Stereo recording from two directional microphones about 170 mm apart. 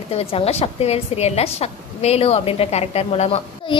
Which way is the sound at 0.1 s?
35° left (ahead or behind).